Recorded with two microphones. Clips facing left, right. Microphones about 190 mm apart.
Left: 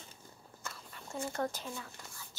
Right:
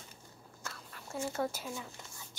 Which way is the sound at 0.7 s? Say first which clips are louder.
Even; centre (ahead or behind).